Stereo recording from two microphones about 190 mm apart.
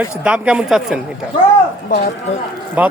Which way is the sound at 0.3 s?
5° right (ahead or behind).